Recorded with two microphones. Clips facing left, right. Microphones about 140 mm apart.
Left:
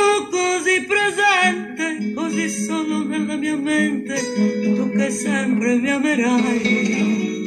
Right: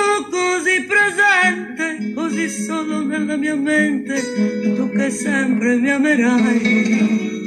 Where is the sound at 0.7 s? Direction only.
20° left (ahead or behind).